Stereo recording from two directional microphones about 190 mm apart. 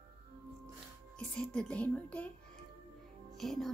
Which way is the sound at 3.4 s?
Centre (ahead or behind).